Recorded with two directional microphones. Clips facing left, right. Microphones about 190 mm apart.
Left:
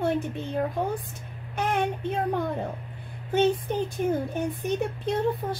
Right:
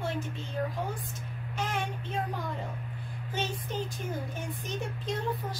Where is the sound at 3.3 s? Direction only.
60° left (ahead or behind).